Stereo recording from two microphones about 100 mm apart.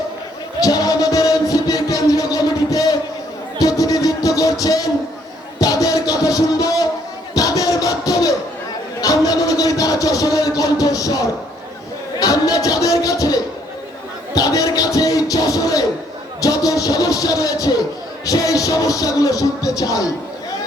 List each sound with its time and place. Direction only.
0.6 s music: 40° left (ahead or behind)
7.3 s crowd: 35° left (ahead or behind)
9.0 s music: 40° left (ahead or behind)
12.2 s a sound: 40° left (ahead or behind)
14.3 s music: 40° left (ahead or behind)